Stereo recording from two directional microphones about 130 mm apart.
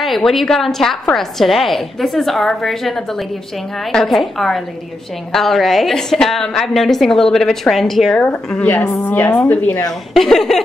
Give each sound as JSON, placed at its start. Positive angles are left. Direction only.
{"t": 0.0, "sound": "a woman's voice", "side_deg": 0}
{"t": 10.1, "sound": "a woman's voice", "side_deg": 0}